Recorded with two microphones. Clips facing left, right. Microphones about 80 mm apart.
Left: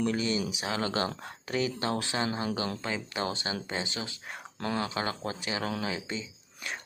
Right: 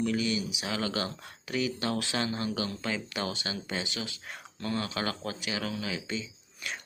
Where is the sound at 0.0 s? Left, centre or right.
Left.